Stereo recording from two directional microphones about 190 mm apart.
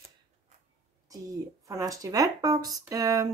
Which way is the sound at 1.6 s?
15° right (ahead or behind).